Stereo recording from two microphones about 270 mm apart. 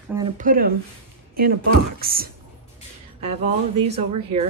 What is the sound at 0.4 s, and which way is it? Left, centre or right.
Speech, right.